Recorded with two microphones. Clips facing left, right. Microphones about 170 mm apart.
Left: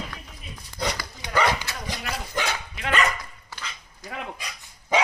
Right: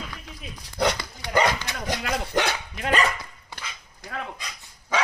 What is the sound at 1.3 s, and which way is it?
Dog, 20° right (ahead or behind).